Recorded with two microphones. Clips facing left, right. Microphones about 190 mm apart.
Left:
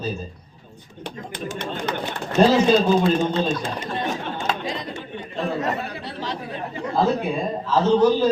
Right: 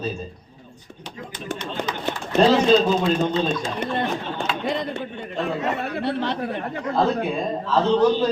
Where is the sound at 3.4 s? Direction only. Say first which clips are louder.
Right 1 dB; 60° right (ahead or behind).